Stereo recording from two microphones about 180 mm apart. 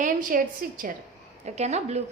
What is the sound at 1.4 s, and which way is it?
Speech, 40° right (ahead or behind).